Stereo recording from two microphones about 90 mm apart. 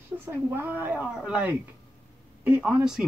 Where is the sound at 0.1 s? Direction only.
25° right (ahead or behind).